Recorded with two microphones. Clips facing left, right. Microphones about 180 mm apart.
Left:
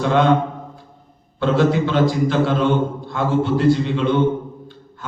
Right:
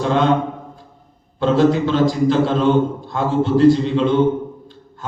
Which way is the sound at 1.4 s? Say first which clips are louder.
Right 2 dB; 40° right (ahead or behind).